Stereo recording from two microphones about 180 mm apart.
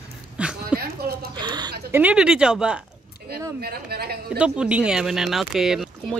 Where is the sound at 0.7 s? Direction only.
55° right (ahead or behind).